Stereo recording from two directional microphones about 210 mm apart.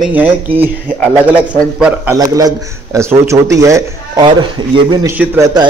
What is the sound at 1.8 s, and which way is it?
A man's voice, 10° right (ahead or behind).